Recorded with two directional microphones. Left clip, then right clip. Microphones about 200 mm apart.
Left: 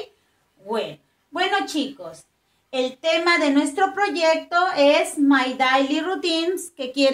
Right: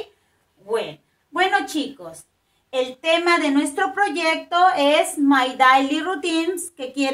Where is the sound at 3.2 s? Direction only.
20° left (ahead or behind).